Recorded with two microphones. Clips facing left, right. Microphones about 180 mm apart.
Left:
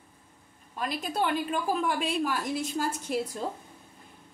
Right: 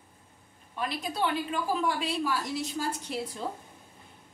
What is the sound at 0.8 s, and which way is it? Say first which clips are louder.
A woman's voice: left 1 dB; 45° left (ahead or behind).